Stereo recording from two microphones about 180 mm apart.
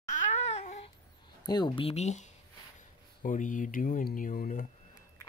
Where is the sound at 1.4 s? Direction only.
25° left (ahead or behind); by 4.6 s 50° left (ahead or behind).